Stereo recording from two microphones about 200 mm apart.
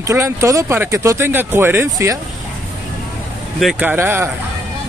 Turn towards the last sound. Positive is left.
turn(degrees=-10)  # may be behind; listen again after turning